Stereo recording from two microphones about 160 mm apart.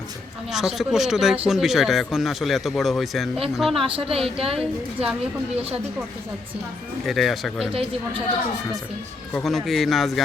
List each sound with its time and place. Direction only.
0.5 s a man's voice: centre (ahead or behind)
3.8 s a woman's voice: 35° right (ahead or behind)
7.0 s a man's voice: centre (ahead or behind)
9.3 s a man's voice: centre (ahead or behind)